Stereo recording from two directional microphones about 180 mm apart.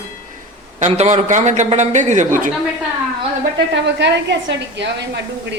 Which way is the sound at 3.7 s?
75° right (ahead or behind).